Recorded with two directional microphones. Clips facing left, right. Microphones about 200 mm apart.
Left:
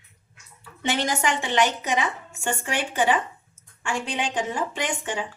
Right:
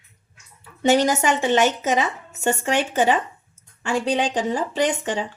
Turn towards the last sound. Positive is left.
turn(degrees=-35)  # may be behind; listen again after turning